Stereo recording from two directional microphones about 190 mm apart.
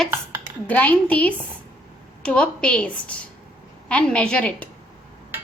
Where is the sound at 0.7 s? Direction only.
10° left (ahead or behind).